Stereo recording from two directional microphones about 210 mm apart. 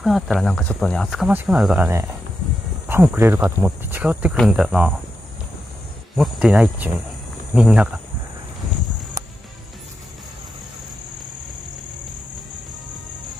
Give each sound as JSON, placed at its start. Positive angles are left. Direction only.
{"t": 0.0, "sound": "speech", "side_deg": 0}
{"t": 2.9, "sound": "speech", "side_deg": -10}
{"t": 6.1, "sound": "speech", "side_deg": -5}